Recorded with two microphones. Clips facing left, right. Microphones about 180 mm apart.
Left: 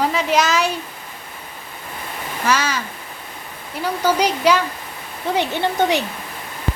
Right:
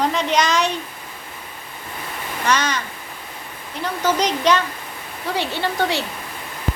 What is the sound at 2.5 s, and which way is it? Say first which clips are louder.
Speech: left 1 dB; 5° left (ahead or behind).